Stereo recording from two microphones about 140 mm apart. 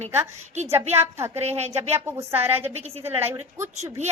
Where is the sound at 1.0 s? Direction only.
20° right (ahead or behind).